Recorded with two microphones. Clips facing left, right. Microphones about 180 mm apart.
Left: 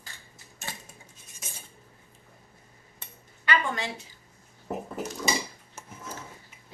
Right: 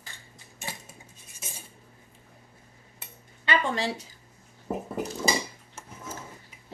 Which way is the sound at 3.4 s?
30° right (ahead or behind).